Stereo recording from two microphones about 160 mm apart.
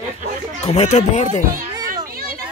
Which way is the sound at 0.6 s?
40° left (ahead or behind).